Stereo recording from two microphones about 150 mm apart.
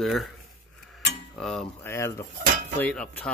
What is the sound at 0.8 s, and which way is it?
Cutlery, centre (ahead or behind).